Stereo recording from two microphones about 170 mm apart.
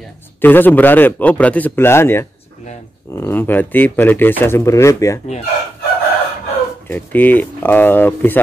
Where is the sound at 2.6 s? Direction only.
45° left (ahead or behind).